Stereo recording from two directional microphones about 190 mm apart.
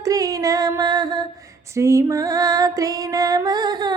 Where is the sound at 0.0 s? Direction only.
20° right (ahead or behind).